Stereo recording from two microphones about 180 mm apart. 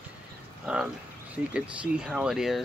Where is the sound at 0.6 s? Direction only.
5° right (ahead or behind).